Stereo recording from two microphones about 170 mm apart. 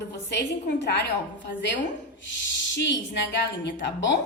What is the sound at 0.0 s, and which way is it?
A woman's voice, 75° left (ahead or behind).